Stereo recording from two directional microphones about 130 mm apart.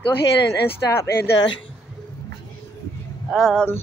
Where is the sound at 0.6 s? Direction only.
20° left (ahead or behind).